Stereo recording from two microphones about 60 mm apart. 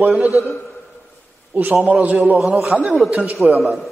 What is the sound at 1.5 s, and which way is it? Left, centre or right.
A man's voice, right.